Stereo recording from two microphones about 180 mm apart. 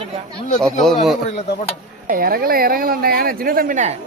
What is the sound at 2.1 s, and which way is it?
Speech, 55° right (ahead or behind).